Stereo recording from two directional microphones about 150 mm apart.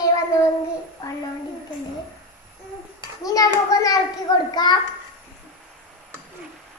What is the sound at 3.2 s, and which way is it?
A child's voice, 25° left (ahead or behind).